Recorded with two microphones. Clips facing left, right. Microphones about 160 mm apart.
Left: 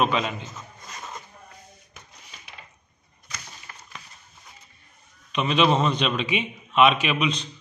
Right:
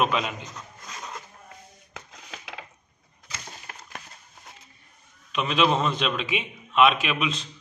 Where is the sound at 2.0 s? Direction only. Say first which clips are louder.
Right 9 dB; 90° right.